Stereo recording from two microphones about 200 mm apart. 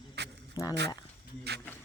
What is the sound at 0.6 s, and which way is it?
Speech, 20° left (ahead or behind).